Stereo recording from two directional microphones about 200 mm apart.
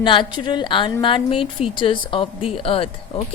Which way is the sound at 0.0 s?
25° left (ahead or behind).